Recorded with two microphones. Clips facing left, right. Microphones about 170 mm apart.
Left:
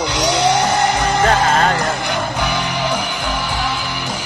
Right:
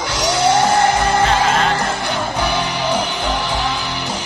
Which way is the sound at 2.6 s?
15° left (ahead or behind).